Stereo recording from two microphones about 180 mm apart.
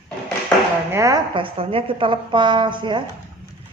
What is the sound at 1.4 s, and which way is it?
Speech, 30° right (ahead or behind).